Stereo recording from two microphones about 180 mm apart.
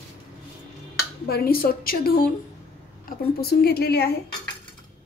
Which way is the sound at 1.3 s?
55° left (ahead or behind).